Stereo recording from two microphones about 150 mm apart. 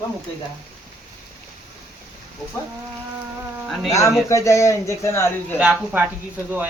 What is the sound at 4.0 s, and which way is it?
A man's voice, 20° left (ahead or behind).